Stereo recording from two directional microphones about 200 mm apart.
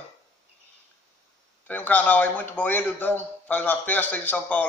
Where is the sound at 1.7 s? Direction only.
10° left (ahead or behind).